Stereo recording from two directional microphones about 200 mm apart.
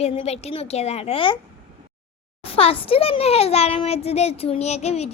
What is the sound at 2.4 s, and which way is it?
A child's voice, 30° left (ahead or behind).